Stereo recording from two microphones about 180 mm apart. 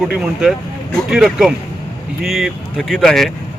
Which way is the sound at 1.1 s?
Centre (ahead or behind).